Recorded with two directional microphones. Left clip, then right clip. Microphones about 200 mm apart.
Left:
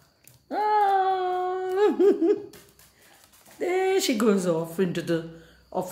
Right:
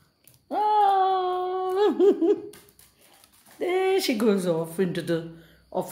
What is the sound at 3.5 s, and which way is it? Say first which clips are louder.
Speech: even; 15° right (ahead or behind).